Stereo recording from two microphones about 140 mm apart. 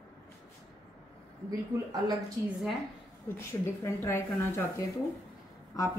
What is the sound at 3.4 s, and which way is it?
Speech, 20° left (ahead or behind).